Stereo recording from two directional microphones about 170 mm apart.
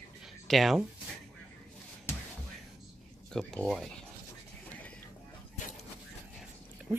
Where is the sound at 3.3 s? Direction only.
5° left (ahead or behind).